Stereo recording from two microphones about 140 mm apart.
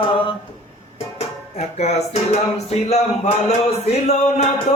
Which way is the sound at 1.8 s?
50° left (ahead or behind).